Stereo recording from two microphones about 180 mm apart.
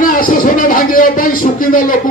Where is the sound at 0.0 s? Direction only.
50° left (ahead or behind).